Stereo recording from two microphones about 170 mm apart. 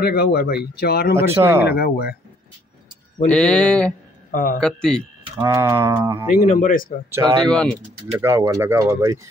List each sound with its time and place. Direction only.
0.0 s speech: 65° left (ahead or behind)
1.1 s speech: 15° right (ahead or behind)
1.7 s speech: 70° left (ahead or behind)
3.3 s speech: 5° left (ahead or behind)
4.3 s a man's voice: 55° left (ahead or behind)
4.6 s speech: 5° left (ahead or behind)
5.4 s speech: 15° right (ahead or behind)
6.4 s speech: 50° left (ahead or behind)
7.1 s speech: 20° right (ahead or behind)